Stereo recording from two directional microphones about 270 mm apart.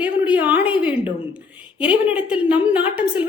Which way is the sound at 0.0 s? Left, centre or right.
Centre.